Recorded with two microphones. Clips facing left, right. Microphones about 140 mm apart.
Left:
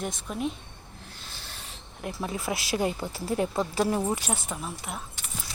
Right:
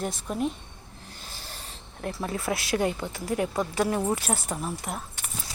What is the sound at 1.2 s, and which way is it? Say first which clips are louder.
Rub: right 4 dB; 45° right (ahead or behind).